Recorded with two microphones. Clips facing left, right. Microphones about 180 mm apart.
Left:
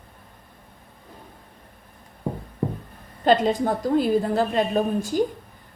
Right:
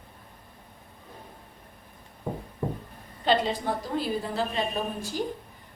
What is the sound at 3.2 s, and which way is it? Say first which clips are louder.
A woman's voice: left 6 dB; 45° left (ahead or behind).